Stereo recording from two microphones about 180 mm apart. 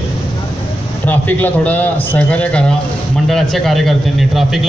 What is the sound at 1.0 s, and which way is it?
A man's voice, 10° left (ahead or behind).